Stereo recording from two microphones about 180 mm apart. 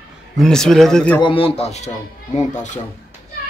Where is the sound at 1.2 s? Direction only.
30° left (ahead or behind).